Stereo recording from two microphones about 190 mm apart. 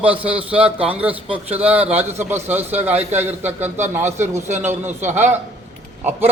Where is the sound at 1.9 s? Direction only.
35° right (ahead or behind).